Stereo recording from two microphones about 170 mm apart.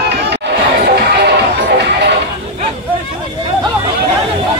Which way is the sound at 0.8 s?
75° right (ahead or behind).